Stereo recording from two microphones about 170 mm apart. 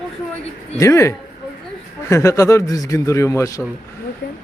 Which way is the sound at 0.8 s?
15° left (ahead or behind).